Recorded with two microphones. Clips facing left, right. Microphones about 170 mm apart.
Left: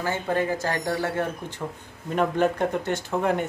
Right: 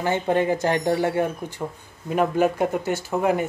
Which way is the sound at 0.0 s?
20° right (ahead or behind).